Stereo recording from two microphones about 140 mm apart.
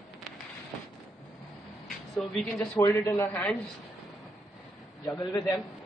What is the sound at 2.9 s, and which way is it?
Speech, 15° left (ahead or behind).